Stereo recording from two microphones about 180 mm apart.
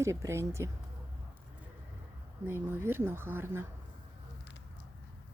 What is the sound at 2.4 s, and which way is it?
Speech, 10° right (ahead or behind).